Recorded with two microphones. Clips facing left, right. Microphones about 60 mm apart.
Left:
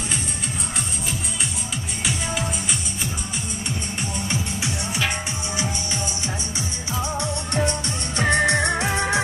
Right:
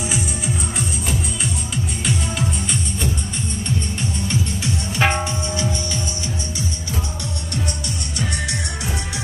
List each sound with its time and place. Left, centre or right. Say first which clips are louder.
2.0 s music: right 1 dB; centre
4.9 s music: right 8 dB; right
8.2 s music: left 9 dB; left